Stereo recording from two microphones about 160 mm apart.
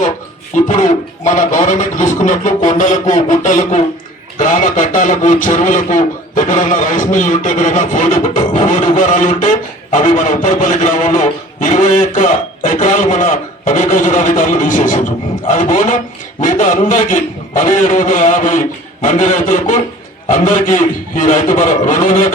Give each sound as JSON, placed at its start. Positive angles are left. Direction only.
{"t": 0.5, "sound": "a man's voice", "side_deg": 50}